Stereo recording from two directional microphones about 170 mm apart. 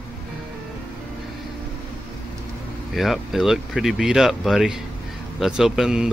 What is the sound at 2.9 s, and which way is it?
Speech, centre (ahead or behind).